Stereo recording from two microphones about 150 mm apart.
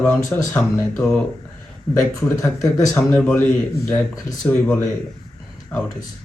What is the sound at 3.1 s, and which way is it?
Speech, 5° left (ahead or behind).